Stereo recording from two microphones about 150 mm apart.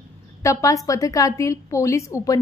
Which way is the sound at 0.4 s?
20° left (ahead or behind).